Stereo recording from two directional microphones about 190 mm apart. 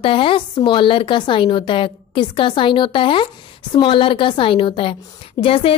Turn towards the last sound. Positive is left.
turn(degrees=30)  # may be behind; listen again after turning